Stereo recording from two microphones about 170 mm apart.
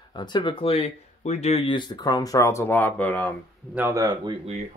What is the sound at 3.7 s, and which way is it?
Speech, 15° right (ahead or behind).